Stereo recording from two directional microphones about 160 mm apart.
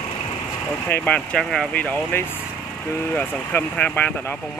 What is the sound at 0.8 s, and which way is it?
Speech, 10° left (ahead or behind).